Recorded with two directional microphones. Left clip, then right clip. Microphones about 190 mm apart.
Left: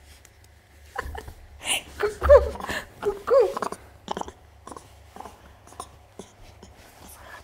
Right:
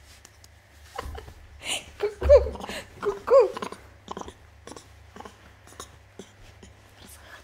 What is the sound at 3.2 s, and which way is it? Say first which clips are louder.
Dog: right 1 dB; 10° right (ahead or behind).